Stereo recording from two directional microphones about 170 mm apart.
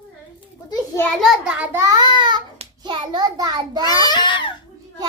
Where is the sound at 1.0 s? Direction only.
Centre (ahead or behind); by 3.9 s 25° right (ahead or behind).